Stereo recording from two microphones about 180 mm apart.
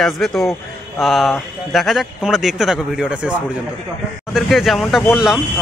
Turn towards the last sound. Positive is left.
turn(degrees=0)  # may be behind; listen again after turning